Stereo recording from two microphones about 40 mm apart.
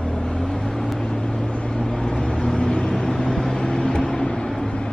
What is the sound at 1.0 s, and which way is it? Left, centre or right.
Vehicle, left.